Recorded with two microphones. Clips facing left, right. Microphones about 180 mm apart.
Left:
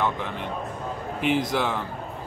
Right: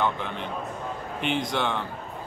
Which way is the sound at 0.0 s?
Centre (ahead or behind).